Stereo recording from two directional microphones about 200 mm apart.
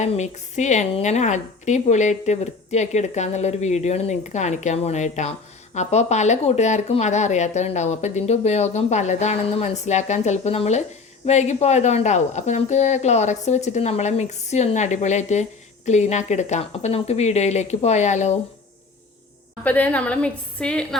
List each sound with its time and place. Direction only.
0.0 s a woman's voice: 35° left (ahead or behind)
19.6 s a woman's voice: 10° left (ahead or behind)